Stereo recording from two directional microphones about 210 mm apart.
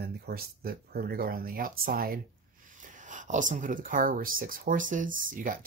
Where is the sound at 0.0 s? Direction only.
45° right (ahead or behind).